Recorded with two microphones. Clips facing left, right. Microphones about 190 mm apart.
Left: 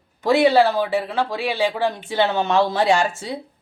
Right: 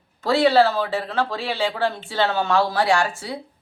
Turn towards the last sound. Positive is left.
turn(degrees=20)  # may be behind; listen again after turning